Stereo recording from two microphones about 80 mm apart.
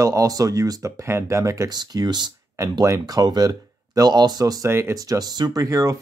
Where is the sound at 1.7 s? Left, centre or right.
Right.